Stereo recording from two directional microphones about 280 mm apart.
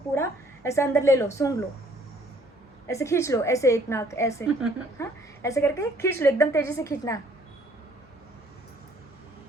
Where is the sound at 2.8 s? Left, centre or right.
Centre.